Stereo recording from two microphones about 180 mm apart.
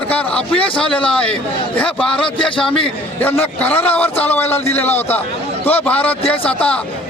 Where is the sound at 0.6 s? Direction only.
30° left (ahead or behind).